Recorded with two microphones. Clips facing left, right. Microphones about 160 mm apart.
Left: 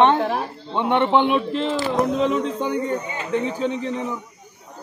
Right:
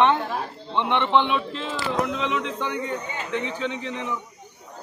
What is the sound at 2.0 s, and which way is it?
A man's voice, 40° left (ahead or behind).